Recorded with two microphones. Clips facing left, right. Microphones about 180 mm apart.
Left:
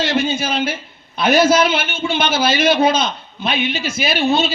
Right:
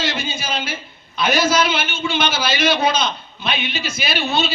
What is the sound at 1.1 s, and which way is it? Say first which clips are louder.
A man's voice: left 4 dB; 55° left (ahead or behind).